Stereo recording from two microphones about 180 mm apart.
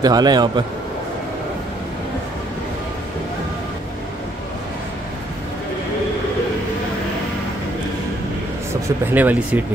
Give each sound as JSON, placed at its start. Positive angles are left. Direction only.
{"t": 0.0, "sound": "a man's voice", "side_deg": -20}
{"t": 9.1, "sound": "speech", "side_deg": -10}